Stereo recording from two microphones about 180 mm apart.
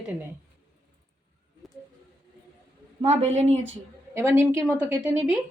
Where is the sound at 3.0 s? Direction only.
35° right (ahead or behind).